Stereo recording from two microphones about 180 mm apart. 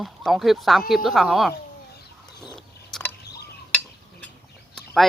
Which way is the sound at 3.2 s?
65° left (ahead or behind).